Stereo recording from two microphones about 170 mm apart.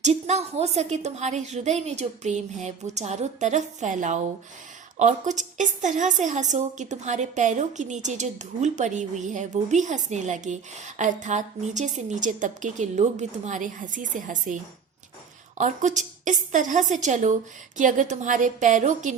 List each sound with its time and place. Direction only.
0.0 s a woman's voice: 40° right (ahead or behind)